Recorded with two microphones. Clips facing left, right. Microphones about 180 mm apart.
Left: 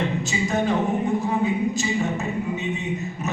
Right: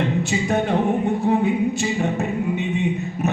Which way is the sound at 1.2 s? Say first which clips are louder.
Right 4 dB; 60° right (ahead or behind).